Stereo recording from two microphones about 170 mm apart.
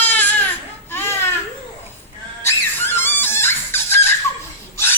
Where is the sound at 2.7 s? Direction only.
15° left (ahead or behind).